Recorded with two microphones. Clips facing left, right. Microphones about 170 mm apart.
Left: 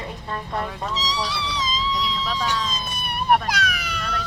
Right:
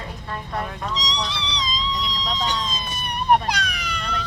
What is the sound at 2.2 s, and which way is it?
Emergency vehicle, 20° right (ahead or behind).